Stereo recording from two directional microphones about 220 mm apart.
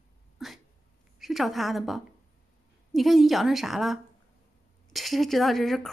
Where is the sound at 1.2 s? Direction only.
Centre (ahead or behind).